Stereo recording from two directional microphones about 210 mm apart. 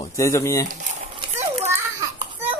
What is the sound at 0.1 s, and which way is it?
Speech, 15° left (ahead or behind).